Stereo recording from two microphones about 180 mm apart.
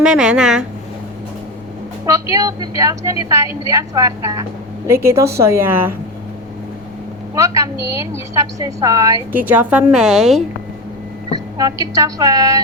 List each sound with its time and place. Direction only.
0.0 s speech: 5° right (ahead or behind)
2.0 s a woman's voice: 15° right (ahead or behind)
7.3 s a woman's voice: 15° right (ahead or behind)
11.3 s a woman's voice: 20° right (ahead or behind)